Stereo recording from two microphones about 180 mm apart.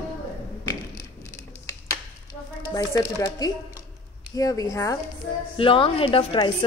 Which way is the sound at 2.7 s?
20° left (ahead or behind).